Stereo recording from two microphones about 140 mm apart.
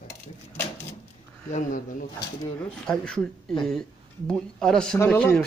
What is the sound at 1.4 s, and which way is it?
Speech, 60° left (ahead or behind).